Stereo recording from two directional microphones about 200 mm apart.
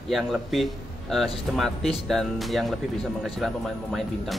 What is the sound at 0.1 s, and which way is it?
Speech, centre (ahead or behind).